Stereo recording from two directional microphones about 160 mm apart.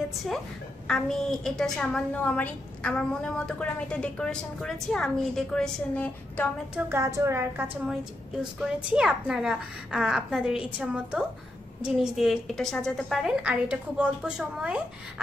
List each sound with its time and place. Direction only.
0.8 s a woman's voice: 5° left (ahead or behind)
6.9 s a woman's voice: 20° right (ahead or behind)
8.5 s a woman's voice: 5° right (ahead or behind)